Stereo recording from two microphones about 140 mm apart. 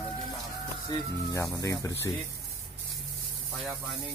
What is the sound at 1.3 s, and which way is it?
Speech, 25° left (ahead or behind).